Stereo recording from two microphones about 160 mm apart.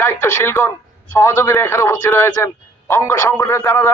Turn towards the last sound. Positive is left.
turn(degrees=15)  # may be behind; listen again after turning